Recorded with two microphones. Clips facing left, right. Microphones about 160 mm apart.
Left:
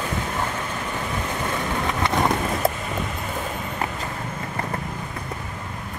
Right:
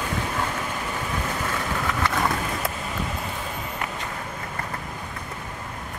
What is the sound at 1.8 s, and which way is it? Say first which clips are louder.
Vehicle: left 3 dB; 25° left (ahead or behind).